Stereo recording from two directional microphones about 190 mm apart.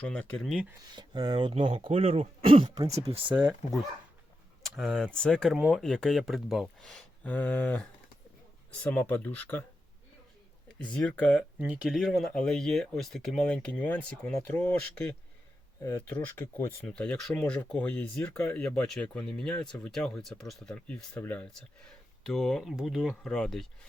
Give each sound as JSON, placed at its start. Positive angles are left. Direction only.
{"t": 0.0, "sound": "speech", "side_deg": 5}
{"t": 0.9, "sound": "speech", "side_deg": -20}
{"t": 3.3, "sound": "speech", "side_deg": -5}
{"t": 10.7, "sound": "speech", "side_deg": 5}
{"t": 11.6, "sound": "speech", "side_deg": -5}